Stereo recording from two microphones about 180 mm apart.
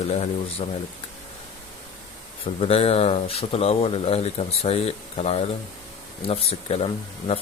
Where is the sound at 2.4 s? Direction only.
35° left (ahead or behind).